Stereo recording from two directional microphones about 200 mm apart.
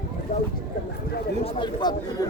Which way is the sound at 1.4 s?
25° left (ahead or behind).